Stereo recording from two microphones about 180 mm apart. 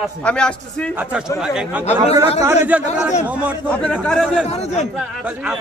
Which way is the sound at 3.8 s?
5° left (ahead or behind).